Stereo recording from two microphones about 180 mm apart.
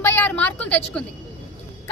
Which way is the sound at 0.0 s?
15° left (ahead or behind).